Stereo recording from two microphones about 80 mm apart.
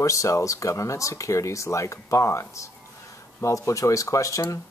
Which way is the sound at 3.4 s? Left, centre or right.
Left.